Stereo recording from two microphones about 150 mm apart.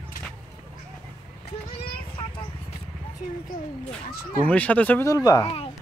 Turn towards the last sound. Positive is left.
turn(degrees=25)  # may be behind; listen again after turning